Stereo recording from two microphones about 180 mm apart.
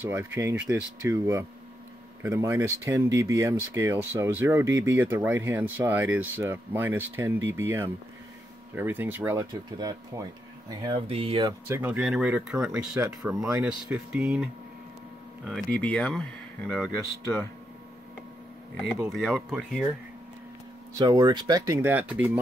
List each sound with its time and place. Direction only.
0.0 s speech: 10° right (ahead or behind); by 11.5 s 30° right (ahead or behind)
11.6 s speech: 10° right (ahead or behind)
15.7 s speech: 5° left (ahead or behind)
19.1 s speech: centre (ahead or behind)
21.0 s speech: 20° right (ahead or behind)